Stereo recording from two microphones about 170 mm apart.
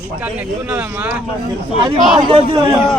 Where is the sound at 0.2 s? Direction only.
5° right (ahead or behind).